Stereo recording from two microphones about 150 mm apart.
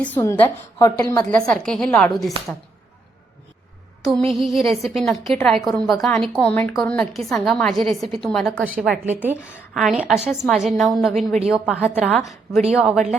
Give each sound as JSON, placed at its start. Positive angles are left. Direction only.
{"t": 0.0, "sound": "a woman's voice", "side_deg": 15}
{"t": 1.2, "sound": "a woman's voice", "side_deg": 5}
{"t": 4.3, "sound": "a woman's voice", "side_deg": 0}
{"t": 8.8, "sound": "a woman's voice", "side_deg": -10}
{"t": 9.7, "sound": "a woman's voice", "side_deg": 0}
{"t": 11.8, "sound": "a woman's voice", "side_deg": 10}
{"t": 12.2, "sound": "a woman's voice", "side_deg": 0}